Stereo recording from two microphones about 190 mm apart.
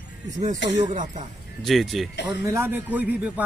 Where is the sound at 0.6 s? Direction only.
65° left (ahead or behind).